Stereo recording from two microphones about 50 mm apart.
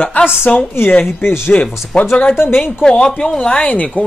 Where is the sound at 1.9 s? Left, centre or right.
Centre.